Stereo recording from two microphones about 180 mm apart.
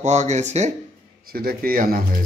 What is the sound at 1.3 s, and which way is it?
Speech, 55° right (ahead or behind).